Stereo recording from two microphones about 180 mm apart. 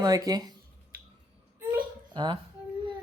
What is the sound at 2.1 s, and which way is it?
Speech, 25° right (ahead or behind).